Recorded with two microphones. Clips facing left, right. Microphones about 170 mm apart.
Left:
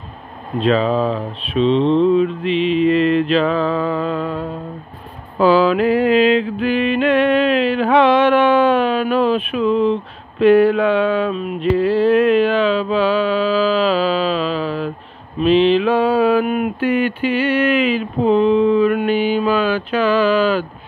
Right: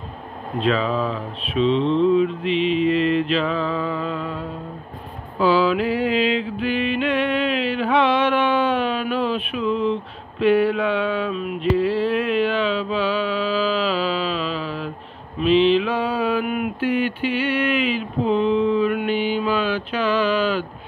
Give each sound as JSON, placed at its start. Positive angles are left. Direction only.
{"t": 0.6, "sound": "speech", "side_deg": 30}
{"t": 1.5, "sound": "mantra", "side_deg": 30}
{"t": 2.4, "sound": "music", "side_deg": 0}
{"t": 3.0, "sound": "mantra", "side_deg": 45}
{"t": 5.4, "sound": "music", "side_deg": 45}
{"t": 10.4, "sound": "a sound", "side_deg": 45}
{"t": 16.8, "sound": "mantra", "side_deg": 55}